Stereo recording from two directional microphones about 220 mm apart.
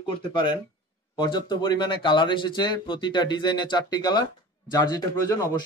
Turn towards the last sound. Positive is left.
turn(degrees=15)  # may be behind; listen again after turning